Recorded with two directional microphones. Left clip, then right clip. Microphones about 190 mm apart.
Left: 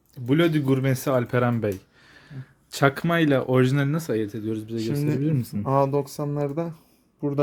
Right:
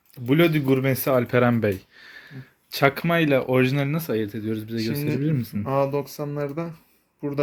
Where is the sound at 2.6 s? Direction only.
25° left (ahead or behind).